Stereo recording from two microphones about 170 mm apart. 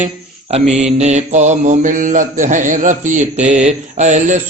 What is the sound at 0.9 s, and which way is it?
Mantra, 40° right (ahead or behind).